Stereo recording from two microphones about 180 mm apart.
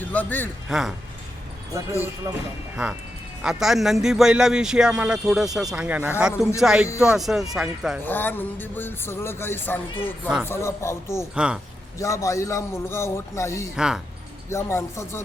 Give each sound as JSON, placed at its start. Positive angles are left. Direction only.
{"t": 0.0, "sound": "speech", "side_deg": 10}
{"t": 0.7, "sound": "a man's voice", "side_deg": 0}
{"t": 3.4, "sound": "a man's voice", "side_deg": -5}
{"t": 8.0, "sound": "speech", "side_deg": 10}
{"t": 10.2, "sound": "speech", "side_deg": -5}
{"t": 10.5, "sound": "speech", "side_deg": 15}
{"t": 11.3, "sound": "a man's voice", "side_deg": -5}
{"t": 11.9, "sound": "speech", "side_deg": 15}
{"t": 13.7, "sound": "a man's voice", "side_deg": -5}
{"t": 14.5, "sound": "speech", "side_deg": 15}